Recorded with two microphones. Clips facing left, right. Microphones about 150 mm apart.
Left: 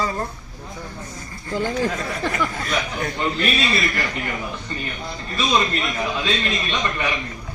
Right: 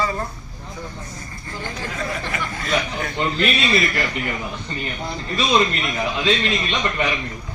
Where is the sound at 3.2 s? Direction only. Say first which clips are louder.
Right 1 dB; 20° right (ahead or behind).